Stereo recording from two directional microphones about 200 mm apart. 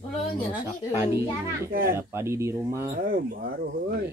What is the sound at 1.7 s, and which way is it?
Speech, 45° right (ahead or behind).